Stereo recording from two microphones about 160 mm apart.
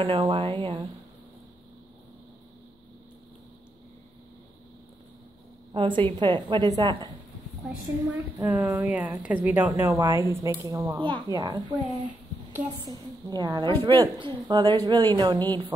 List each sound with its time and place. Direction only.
0.0 s speech: 35° right (ahead or behind)
5.7 s a woman's voice: 30° right (ahead or behind)
8.4 s a woman's voice: 10° right (ahead or behind); by 15.4 s 25° right (ahead or behind)